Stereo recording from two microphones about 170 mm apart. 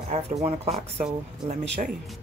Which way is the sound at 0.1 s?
35° right (ahead or behind).